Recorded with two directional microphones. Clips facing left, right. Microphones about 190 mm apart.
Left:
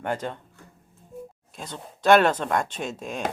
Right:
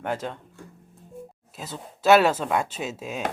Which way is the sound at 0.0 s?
5° right (ahead or behind).